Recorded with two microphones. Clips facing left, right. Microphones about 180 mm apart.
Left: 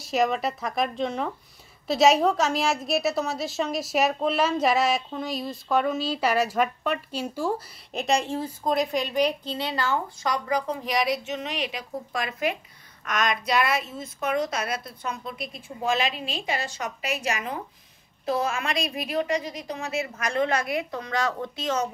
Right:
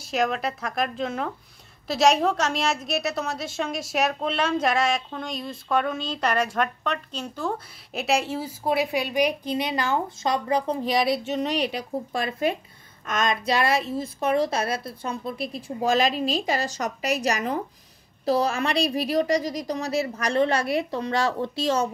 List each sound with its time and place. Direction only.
0.0 s a woman's voice: centre (ahead or behind)
7.9 s a woman's voice: 5° right (ahead or behind); by 21.8 s 30° right (ahead or behind)